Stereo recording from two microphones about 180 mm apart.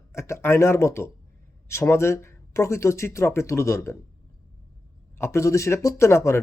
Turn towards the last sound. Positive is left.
turn(degrees=15)  # may be behind; listen again after turning